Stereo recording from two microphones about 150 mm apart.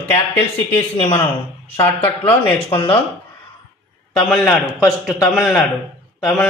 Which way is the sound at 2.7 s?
35° left (ahead or behind).